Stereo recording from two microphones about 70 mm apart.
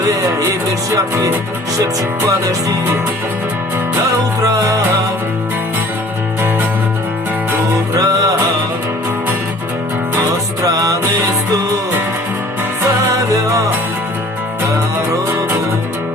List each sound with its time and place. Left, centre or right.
4.4 s music: right
7.9 s music: right
10.6 s music: right